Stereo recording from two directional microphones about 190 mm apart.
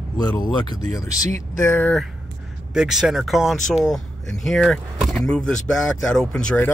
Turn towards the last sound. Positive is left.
turn(degrees=5)  # may be behind; listen again after turning